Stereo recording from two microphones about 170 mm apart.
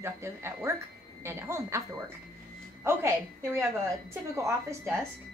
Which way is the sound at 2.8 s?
15° right (ahead or behind).